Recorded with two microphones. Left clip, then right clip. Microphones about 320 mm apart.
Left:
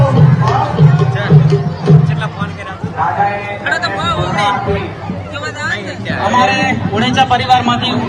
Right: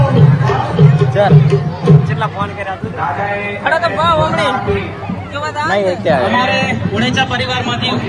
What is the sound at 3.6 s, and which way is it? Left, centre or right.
Music, centre.